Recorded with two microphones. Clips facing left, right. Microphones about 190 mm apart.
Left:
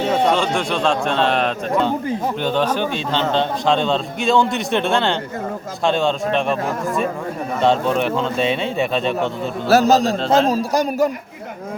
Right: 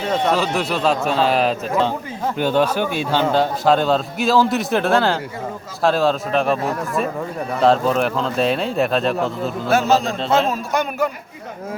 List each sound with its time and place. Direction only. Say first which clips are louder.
0.3 s a man's voice: left 1 dB; 5° right (ahead or behind)
9.6 s a man's voice: left 4 dB; 40° left (ahead or behind)